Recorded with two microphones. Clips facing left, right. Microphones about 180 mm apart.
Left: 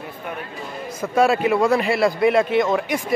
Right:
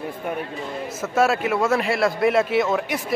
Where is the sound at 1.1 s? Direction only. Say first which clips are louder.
Left 3 dB; centre (ahead or behind).